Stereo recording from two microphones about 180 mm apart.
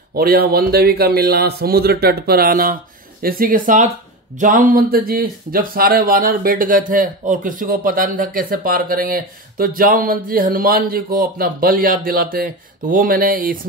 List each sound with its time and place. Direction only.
0.1 s a man's voice: 55° right (ahead or behind)